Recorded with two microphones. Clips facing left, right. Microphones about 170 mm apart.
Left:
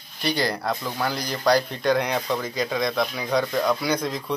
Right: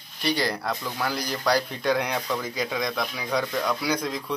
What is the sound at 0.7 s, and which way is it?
Speech, 10° left (ahead or behind).